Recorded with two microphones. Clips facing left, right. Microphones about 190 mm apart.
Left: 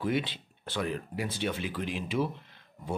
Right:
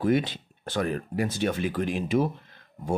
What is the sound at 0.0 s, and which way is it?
Speech, 45° right (ahead or behind).